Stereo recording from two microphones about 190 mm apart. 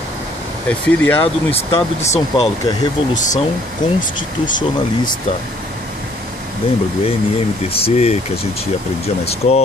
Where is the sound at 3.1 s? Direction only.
40° left (ahead or behind).